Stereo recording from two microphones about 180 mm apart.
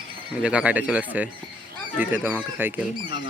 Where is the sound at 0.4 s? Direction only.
5° right (ahead or behind).